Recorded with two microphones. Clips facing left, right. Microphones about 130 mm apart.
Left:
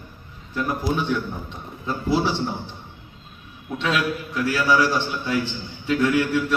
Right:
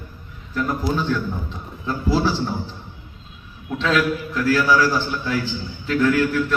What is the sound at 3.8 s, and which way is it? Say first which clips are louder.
A man's voice: right 4 dB; 20° left (ahead or behind).